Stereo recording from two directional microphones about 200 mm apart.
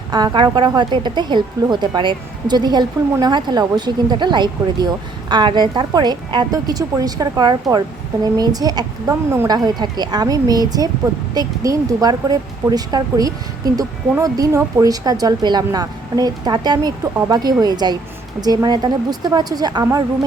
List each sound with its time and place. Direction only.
0.1 s a woman's voice: 20° right (ahead or behind)